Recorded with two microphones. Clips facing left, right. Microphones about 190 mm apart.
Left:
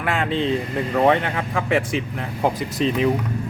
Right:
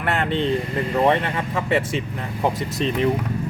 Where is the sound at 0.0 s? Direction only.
Centre (ahead or behind).